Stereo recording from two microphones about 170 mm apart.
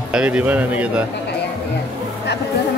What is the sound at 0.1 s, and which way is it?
Speech, 5° right (ahead or behind).